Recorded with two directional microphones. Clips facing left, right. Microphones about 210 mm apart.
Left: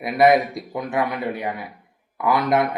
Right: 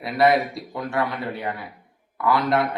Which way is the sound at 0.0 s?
20° left (ahead or behind).